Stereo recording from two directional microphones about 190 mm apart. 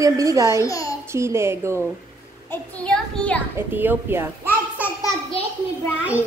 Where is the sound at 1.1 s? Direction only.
15° right (ahead or behind).